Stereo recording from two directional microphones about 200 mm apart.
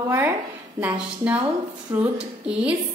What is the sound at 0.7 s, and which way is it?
A woman's voice, 5° right (ahead or behind).